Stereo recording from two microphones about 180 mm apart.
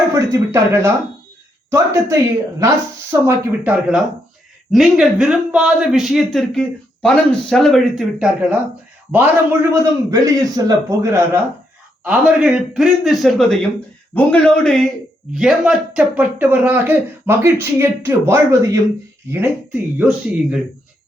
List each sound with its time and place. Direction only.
0.1 s speech: 15° right (ahead or behind)
10.1 s a man's voice: 20° right (ahead or behind)
12.0 s speech: 5° right (ahead or behind)
20.0 s speech: 5° right (ahead or behind)